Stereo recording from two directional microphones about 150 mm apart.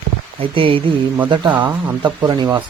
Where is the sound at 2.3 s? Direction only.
30° right (ahead or behind).